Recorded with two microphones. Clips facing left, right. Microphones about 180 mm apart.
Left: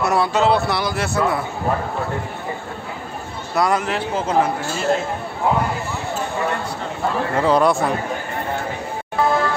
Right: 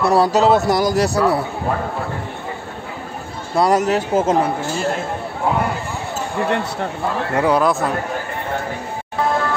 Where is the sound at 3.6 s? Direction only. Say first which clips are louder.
Right 4 dB; 40° right (ahead or behind).